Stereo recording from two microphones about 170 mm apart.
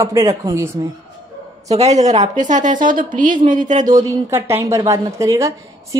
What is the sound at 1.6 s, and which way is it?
A woman's voice, 40° right (ahead or behind).